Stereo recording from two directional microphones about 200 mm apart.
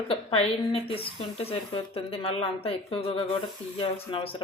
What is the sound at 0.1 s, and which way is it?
A woman's voice, 30° left (ahead or behind).